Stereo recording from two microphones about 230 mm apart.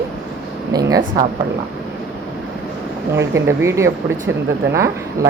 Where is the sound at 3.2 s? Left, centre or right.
Centre.